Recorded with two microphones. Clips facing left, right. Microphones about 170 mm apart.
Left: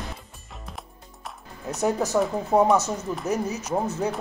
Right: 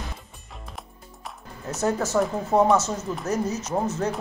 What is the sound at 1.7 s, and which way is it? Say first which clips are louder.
Speech: left 1 dB; 15° left (ahead or behind).